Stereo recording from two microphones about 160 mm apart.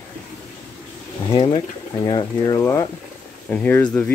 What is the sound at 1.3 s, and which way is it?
Speech, 35° left (ahead or behind).